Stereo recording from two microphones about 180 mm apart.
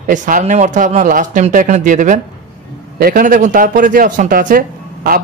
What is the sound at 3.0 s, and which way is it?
Speech, 55° right (ahead or behind).